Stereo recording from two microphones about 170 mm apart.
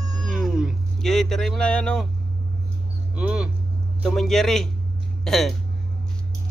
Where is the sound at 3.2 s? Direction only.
5° right (ahead or behind).